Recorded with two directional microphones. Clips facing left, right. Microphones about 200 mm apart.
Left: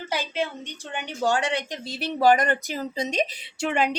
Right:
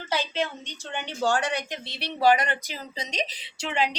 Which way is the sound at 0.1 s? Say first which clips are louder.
Even; 10° left (ahead or behind).